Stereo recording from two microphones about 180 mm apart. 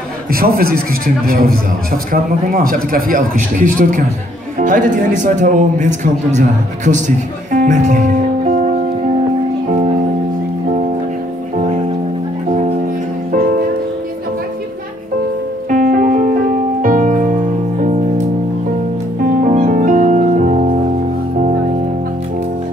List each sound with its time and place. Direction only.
0.3 s a man's voice: 55° right (ahead or behind)
7.5 s music: 45° right (ahead or behind)
15.7 s music: 45° right (ahead or behind)
19.4 s music: 45° right (ahead or behind)